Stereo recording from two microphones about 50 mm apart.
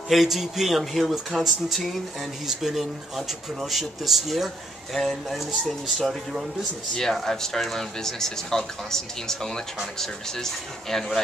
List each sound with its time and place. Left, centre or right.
0.1 s speech: centre
7.2 s speech: centre